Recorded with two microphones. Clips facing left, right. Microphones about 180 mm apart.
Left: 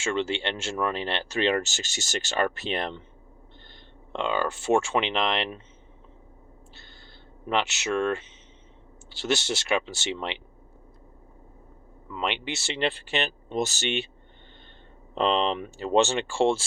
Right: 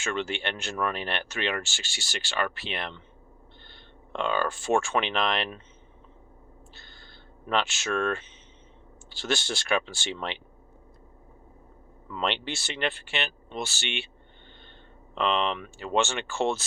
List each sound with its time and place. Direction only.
0.0 s speech: 25° left (ahead or behind); by 3.0 s 40° left (ahead or behind)
4.1 s speech: 20° left (ahead or behind)
7.4 s speech: 20° left (ahead or behind)
12.1 s speech: 10° left (ahead or behind)
12.5 s speech: 25° left (ahead or behind)
15.1 s speech: 35° left (ahead or behind)